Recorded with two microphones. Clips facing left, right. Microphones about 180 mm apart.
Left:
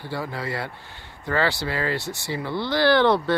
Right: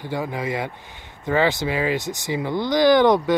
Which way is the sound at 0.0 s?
15° right (ahead or behind).